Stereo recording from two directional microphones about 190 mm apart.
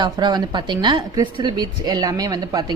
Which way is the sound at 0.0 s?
20° right (ahead or behind).